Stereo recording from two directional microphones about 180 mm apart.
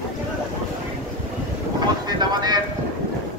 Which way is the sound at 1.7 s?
20° right (ahead or behind).